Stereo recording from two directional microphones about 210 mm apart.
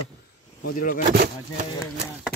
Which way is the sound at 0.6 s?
40° left (ahead or behind).